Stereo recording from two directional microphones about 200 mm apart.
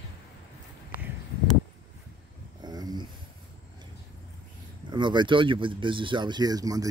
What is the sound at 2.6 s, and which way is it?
Dog, 20° right (ahead or behind).